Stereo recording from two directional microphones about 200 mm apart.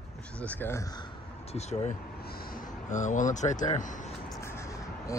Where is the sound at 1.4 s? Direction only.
30° left (ahead or behind).